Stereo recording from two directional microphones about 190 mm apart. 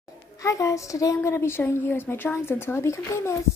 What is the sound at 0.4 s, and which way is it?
A woman's voice, 15° left (ahead or behind).